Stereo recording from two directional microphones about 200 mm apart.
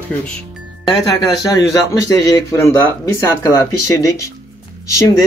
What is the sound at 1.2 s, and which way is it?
A man's voice, 20° left (ahead or behind).